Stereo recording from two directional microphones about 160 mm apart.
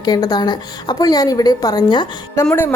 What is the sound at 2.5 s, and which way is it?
Speech, 15° left (ahead or behind).